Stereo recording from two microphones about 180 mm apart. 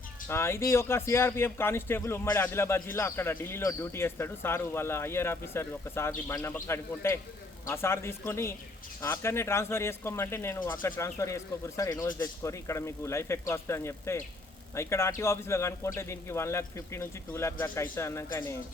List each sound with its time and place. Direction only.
0.3 s a man's voice: 15° left (ahead or behind)